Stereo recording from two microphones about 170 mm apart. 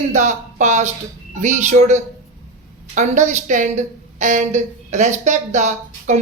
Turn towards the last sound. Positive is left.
turn(degrees=-45)  # may be behind; listen again after turning